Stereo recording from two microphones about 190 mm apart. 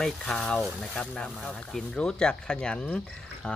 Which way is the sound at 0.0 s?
5° left (ahead or behind).